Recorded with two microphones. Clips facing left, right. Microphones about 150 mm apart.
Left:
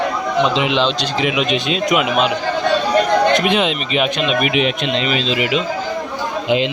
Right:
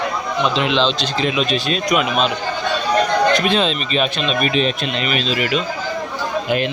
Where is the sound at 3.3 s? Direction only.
20° left (ahead or behind).